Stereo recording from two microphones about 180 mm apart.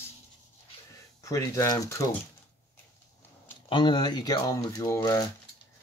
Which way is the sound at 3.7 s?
25° left (ahead or behind).